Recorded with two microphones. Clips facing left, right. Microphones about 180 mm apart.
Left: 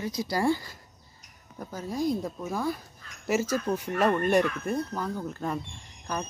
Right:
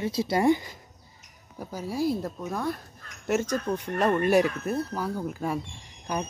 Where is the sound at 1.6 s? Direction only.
10° right (ahead or behind); by 3.9 s 5° left (ahead or behind).